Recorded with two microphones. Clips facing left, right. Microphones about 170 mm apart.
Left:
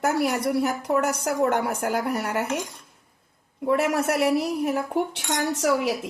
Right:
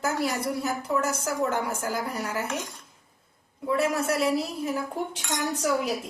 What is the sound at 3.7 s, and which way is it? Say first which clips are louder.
Speech: left 3 dB; 65° left (ahead or behind).